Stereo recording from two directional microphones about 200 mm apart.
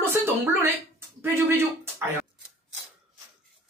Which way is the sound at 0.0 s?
10° right (ahead or behind).